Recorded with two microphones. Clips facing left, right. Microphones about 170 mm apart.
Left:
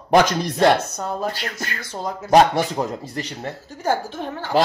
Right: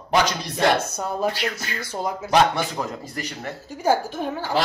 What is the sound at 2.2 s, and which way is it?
Speech, 40° left (ahead or behind).